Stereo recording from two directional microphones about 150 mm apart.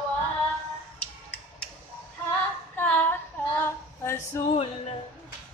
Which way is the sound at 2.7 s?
10° left (ahead or behind).